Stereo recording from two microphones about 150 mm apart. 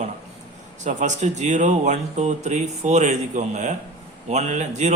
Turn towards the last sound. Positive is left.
turn(degrees=-50)  # may be behind; listen again after turning